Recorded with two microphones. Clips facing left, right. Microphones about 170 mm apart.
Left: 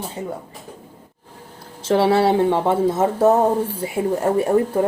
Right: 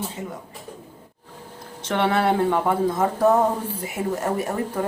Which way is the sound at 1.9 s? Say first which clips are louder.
Left 5 dB; 30° left (ahead or behind).